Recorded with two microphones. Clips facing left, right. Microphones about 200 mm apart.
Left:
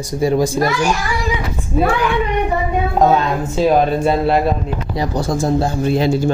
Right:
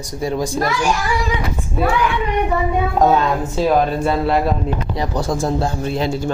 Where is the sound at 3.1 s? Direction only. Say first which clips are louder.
Left 1 dB; 20° left (ahead or behind).